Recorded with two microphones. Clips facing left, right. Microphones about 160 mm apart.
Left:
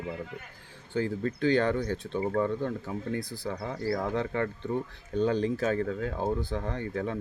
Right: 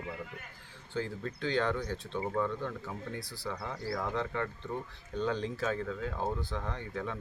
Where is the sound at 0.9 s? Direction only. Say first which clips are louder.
Left 7 dB; 55° left (ahead or behind).